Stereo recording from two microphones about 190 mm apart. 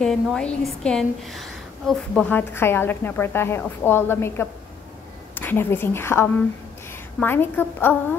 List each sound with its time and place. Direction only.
0.0 s a woman's voice: 5° left (ahead or behind)